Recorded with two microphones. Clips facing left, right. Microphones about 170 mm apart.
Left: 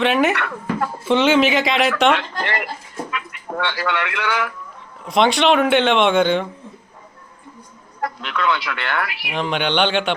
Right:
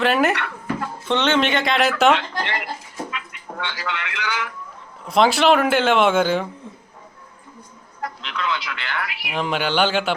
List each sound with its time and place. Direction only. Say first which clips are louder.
0.0 s speech: left 1 dB; centre (ahead or behind)
2.1 s speech: left 1 dB; 55° left (ahead or behind)
3.6 s speech: left 6 dB; 60° left (ahead or behind)
5.0 s speech: even; centre (ahead or behind)
8.0 s speech: left 5 dB; 60° left (ahead or behind)
9.2 s speech: right 1 dB; 5° right (ahead or behind)